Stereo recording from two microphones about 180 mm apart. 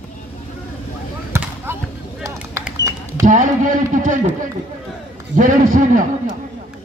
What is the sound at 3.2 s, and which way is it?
Speech, 45° right (ahead or behind).